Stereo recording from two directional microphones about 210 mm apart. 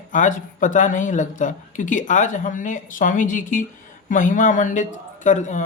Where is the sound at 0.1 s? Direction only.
35° left (ahead or behind).